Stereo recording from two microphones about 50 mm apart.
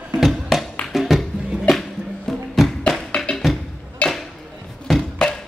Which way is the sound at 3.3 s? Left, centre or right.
Left.